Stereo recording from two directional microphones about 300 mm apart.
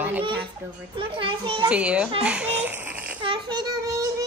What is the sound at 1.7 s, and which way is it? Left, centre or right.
Speech, centre.